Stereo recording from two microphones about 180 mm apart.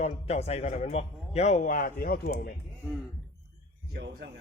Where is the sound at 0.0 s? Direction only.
35° left (ahead or behind); by 2.5 s 55° left (ahead or behind).